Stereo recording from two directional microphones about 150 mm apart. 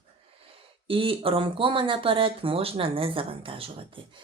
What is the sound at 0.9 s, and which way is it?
Speech, 35° right (ahead or behind).